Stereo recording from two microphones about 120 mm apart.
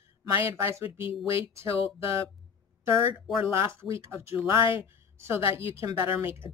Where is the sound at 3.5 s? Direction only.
25° right (ahead or behind).